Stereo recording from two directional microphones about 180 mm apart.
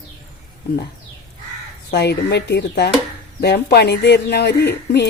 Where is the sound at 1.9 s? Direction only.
65° left (ahead or behind).